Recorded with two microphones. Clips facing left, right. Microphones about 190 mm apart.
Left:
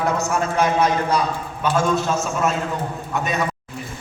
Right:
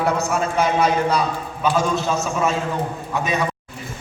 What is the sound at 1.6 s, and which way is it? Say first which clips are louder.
Speech: even; centre (ahead or behind).